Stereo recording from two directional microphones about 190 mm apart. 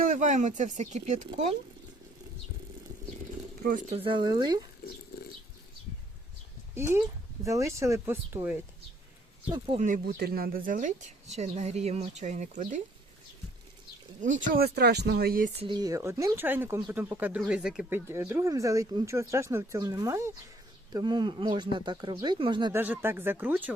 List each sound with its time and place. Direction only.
0.0 s speech: 45° right (ahead or behind)
3.9 s speech: 25° right (ahead or behind)
7.4 s speech: 15° right (ahead or behind)
9.5 s speech: 30° right (ahead or behind)
10.2 s speech: 55° right (ahead or behind)
14.2 s speech: 40° right (ahead or behind)
15.6 s speech: 20° right (ahead or behind)
22.7 s speech: 10° right (ahead or behind)